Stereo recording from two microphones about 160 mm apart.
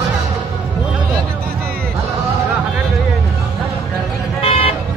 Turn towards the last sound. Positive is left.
turn(degrees=40)  # may be behind; listen again after turning